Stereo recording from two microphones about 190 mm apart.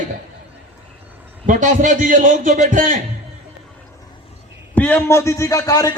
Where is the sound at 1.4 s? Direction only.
45° right (ahead or behind).